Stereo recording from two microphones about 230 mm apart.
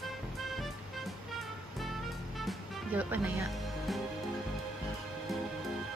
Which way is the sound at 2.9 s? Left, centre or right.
Centre.